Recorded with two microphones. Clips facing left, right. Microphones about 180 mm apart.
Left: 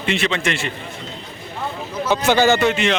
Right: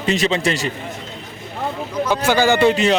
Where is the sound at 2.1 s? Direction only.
10° right (ahead or behind).